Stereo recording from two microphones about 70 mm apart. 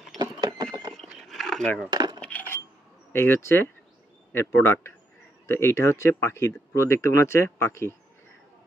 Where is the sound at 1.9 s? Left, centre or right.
Right.